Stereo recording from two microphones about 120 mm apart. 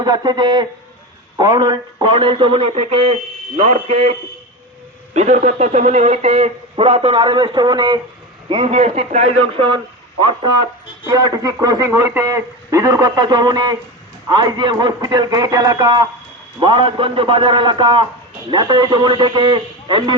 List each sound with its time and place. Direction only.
0.0 s a man's voice: 35° right (ahead or behind); by 4.1 s 65° right (ahead or behind)
5.1 s speech: 70° right (ahead or behind); by 8.0 s 35° right (ahead or behind)
8.4 s a man's voice: 55° right (ahead or behind)